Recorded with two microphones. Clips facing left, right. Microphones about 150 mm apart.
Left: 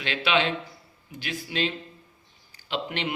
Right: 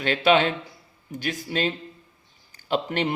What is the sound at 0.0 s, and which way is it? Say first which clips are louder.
Speech: right 6 dB; 45° right (ahead or behind).